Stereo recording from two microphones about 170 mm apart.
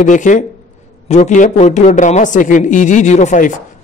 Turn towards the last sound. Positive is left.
turn(degrees=45)  # may be behind; listen again after turning